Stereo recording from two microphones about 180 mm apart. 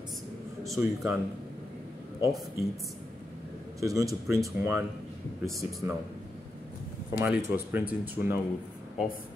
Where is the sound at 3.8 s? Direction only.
20° right (ahead or behind).